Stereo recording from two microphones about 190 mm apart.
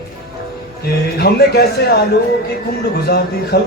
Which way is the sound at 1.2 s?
60° left (ahead or behind).